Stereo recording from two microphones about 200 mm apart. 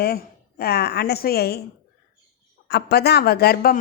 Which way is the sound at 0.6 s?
55° left (ahead or behind).